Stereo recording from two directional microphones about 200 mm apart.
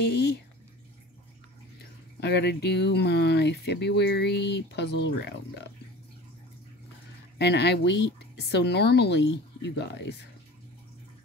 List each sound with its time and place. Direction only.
0.1 s drip: 55° left (ahead or behind)
2.1 s speech: 55° left (ahead or behind)
7.3 s speech: 55° left (ahead or behind)